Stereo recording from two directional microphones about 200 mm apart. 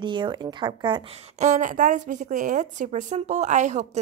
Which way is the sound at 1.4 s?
40° right (ahead or behind).